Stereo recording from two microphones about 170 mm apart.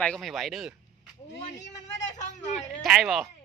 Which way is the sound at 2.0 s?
45° left (ahead or behind).